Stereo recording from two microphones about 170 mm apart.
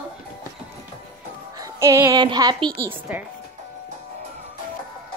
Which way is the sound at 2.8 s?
10° right (ahead or behind).